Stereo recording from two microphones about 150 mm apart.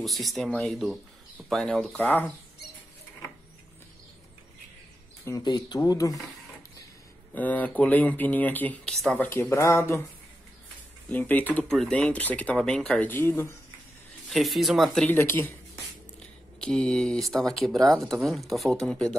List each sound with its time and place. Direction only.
0.0 s speech: centre (ahead or behind)
5.2 s speech: 25° left (ahead or behind)
7.3 s speech: 10° left (ahead or behind)
11.1 s speech: 10° left (ahead or behind)
14.3 s speech: centre (ahead or behind)
15.0 s speech: 15° left (ahead or behind)
16.2 s speech: 5° left (ahead or behind)